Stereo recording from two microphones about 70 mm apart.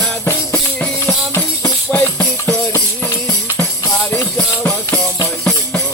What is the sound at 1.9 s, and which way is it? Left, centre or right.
Music, left.